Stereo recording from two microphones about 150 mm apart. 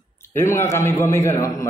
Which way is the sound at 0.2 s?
15° left (ahead or behind).